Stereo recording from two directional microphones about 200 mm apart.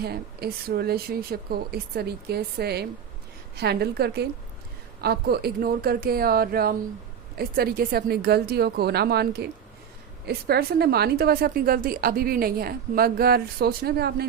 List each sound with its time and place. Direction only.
0.0 s a woman's voice: 50° right (ahead or behind)